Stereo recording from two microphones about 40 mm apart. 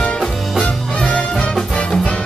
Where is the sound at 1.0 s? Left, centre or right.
Left.